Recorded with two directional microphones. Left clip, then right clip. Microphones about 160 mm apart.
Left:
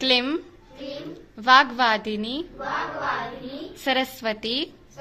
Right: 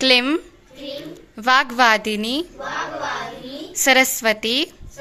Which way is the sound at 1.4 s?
20° right (ahead or behind).